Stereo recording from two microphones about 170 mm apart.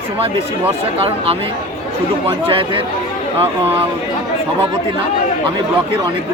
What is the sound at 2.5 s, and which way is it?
Speech, 30° right (ahead or behind).